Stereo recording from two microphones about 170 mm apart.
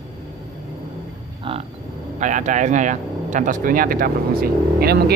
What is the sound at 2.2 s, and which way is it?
Speech, 45° right (ahead or behind).